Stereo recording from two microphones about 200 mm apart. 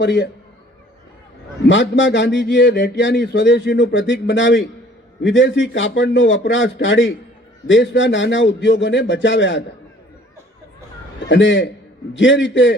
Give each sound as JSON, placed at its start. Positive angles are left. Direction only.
{"t": 0.0, "sound": "speech", "side_deg": 60}
{"t": 1.6, "sound": "a man's voice", "side_deg": 65}
{"t": 11.3, "sound": "a man's voice", "side_deg": 65}